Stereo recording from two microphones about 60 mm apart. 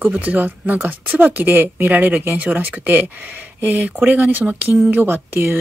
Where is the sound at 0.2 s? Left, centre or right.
Right.